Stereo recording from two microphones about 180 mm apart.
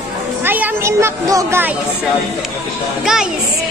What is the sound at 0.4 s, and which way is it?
Speech, 10° right (ahead or behind).